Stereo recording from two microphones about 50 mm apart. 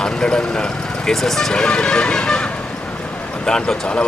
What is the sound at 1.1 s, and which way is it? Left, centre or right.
Speech, centre.